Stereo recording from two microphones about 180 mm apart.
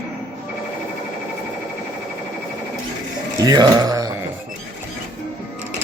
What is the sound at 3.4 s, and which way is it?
Speech, 20° right (ahead or behind).